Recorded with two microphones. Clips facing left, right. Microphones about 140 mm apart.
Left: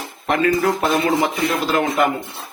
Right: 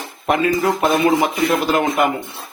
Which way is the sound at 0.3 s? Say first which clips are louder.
Right 1 dB; 15° right (ahead or behind).